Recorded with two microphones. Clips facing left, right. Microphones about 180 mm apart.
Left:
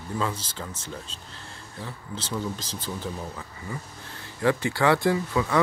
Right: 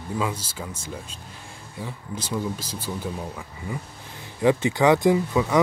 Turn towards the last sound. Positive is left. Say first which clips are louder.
# right 4 dB
turn(degrees=-20)  # may be behind; listen again after turning